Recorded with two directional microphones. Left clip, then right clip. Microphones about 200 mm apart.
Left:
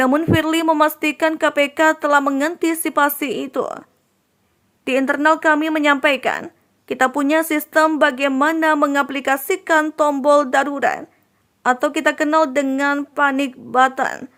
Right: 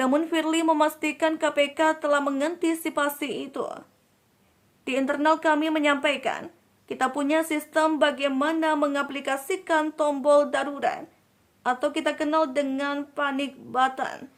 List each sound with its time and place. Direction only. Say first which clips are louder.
0.0 s speech: left 7 dB; 25° left (ahead or behind)
4.9 s a woman's voice: left 7 dB; 25° left (ahead or behind)